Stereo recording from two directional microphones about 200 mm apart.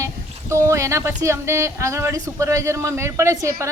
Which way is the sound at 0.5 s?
15° right (ahead or behind).